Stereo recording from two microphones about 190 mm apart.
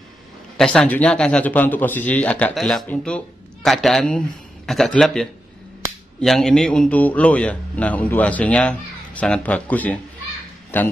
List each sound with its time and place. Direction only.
0.6 s a man's voice: 5° left (ahead or behind)